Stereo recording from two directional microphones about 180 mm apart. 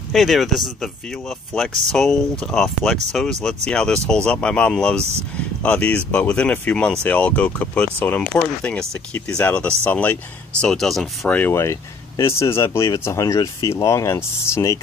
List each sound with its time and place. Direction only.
0.1 s speech: centre (ahead or behind)
1.5 s speech: 5° left (ahead or behind)